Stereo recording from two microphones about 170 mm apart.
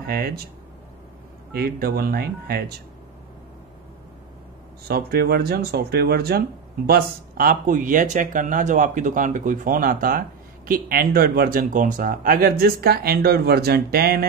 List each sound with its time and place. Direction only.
0.0 s speech: 65° right (ahead or behind)
1.5 s speech: 65° right (ahead or behind)
4.8 s speech: 65° right (ahead or behind)